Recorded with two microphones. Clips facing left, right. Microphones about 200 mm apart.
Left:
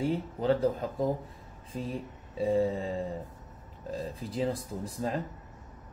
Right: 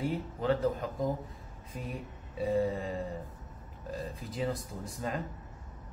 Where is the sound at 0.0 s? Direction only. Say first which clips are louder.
Left 3 dB; 30° left (ahead or behind).